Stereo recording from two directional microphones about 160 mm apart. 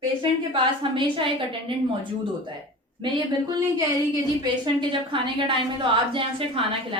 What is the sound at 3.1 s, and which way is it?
A woman's voice, 25° right (ahead or behind).